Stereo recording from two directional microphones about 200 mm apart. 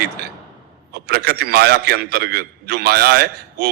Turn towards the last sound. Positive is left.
turn(degrees=-50)  # may be behind; listen again after turning